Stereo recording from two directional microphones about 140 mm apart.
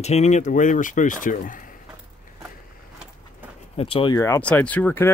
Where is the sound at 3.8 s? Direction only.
40° left (ahead or behind).